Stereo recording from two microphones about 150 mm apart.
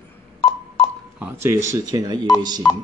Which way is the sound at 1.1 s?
15° right (ahead or behind).